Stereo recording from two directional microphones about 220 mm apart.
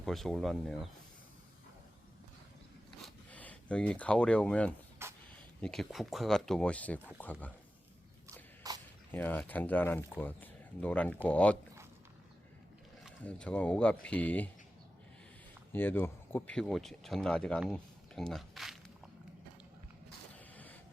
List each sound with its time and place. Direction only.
0.0 s speech: centre (ahead or behind)
3.0 s a sound: 5° left (ahead or behind)
5.0 s a sound: 10° right (ahead or behind)
5.5 s speech: 5° left (ahead or behind)
8.7 s a sound: 15° right (ahead or behind)
9.1 s speech: 10° left (ahead or behind)
13.1 s speech: 5° left (ahead or behind)
15.7 s speech: 10° left (ahead or behind)
20.5 s printer: 5° left (ahead or behind)